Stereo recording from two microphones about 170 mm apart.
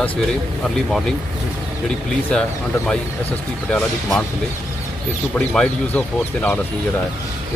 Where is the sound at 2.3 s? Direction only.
5° left (ahead or behind).